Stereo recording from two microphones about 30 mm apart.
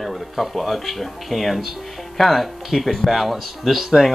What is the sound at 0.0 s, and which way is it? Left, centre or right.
Speech, centre.